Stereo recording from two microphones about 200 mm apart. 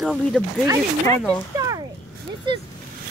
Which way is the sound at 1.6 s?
15° right (ahead or behind).